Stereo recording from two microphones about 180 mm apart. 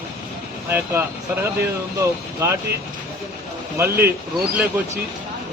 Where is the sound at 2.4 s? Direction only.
15° right (ahead or behind).